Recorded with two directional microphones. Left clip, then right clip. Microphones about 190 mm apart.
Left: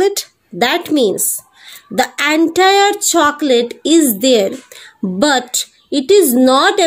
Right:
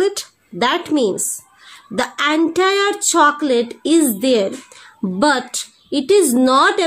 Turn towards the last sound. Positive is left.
turn(degrees=25)  # may be behind; listen again after turning